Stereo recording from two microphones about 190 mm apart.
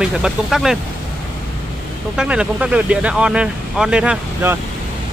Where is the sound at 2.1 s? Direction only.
5° right (ahead or behind).